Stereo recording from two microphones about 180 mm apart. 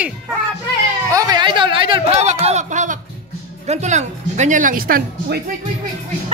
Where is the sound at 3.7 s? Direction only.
40° right (ahead or behind).